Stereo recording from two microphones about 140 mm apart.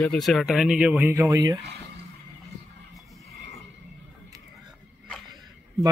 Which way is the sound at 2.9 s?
Centre (ahead or behind).